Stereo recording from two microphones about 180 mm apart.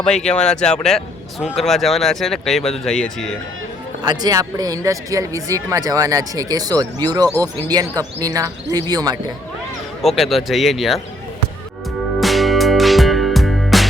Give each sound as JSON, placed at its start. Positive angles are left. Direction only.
{"t": 0.0, "sound": "speech", "side_deg": 5}
{"t": 4.0, "sound": "speech", "side_deg": -20}
{"t": 10.0, "sound": "speech", "side_deg": 0}
{"t": 12.2, "sound": "music", "side_deg": 0}